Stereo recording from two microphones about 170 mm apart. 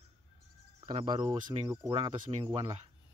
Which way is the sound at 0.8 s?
35° right (ahead or behind).